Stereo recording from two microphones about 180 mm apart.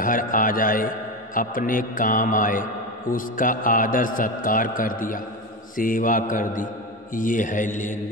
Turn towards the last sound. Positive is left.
turn(degrees=45)  # may be behind; listen again after turning